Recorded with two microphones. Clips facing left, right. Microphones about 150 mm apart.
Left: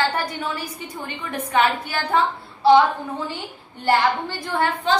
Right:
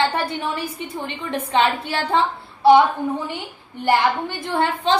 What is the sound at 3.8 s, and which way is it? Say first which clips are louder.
A woman's voice: right 1 dB; 20° right (ahead or behind).